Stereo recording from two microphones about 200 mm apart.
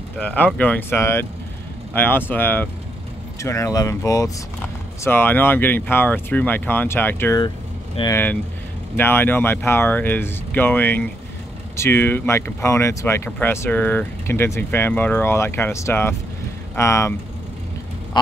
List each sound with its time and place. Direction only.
0.2 s speech: 5° left (ahead or behind); by 8.2 s 20° left (ahead or behind)
8.9 s speech: 10° left (ahead or behind)